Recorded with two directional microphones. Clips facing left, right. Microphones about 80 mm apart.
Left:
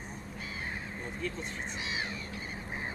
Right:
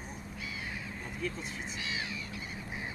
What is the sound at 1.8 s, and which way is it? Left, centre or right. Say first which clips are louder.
Crow: left 1 dB; left.